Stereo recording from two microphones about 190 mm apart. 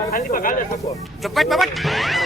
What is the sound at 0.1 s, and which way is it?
Speech, 50° left (ahead or behind).